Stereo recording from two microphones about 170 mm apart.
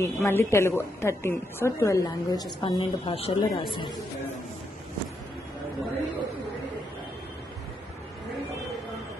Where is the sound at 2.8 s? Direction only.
35° left (ahead or behind).